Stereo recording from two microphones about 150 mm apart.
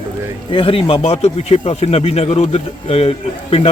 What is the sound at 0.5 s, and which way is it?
Speech, 40° left (ahead or behind).